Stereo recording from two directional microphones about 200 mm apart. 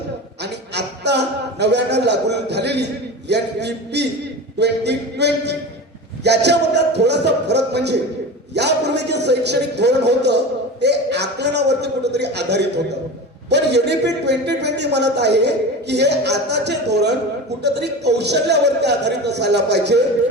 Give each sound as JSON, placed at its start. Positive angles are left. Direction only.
{"t": 0.4, "sound": "a man's voice", "side_deg": -60}